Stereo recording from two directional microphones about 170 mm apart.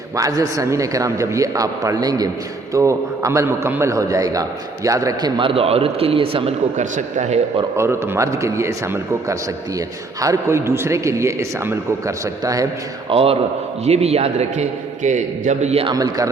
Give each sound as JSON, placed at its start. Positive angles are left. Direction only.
{"t": 0.2, "sound": "a man's voice", "side_deg": -20}
{"t": 7.8, "sound": "a man's voice", "side_deg": -15}
{"t": 13.1, "sound": "a man's voice", "side_deg": -35}
{"t": 15.9, "sound": "a man's voice", "side_deg": -20}